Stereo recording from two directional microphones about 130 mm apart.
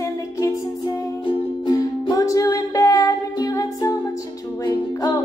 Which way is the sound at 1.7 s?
30° left (ahead or behind).